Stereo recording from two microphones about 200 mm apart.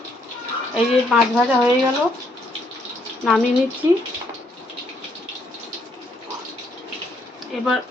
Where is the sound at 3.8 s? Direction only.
15° right (ahead or behind).